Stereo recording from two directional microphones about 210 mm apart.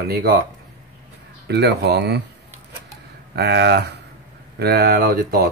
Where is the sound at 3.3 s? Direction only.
50° right (ahead or behind).